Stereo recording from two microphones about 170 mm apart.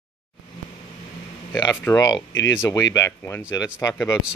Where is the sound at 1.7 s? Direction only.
20° left (ahead or behind).